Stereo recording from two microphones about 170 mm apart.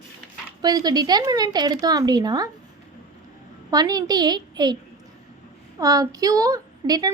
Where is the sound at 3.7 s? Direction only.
20° right (ahead or behind).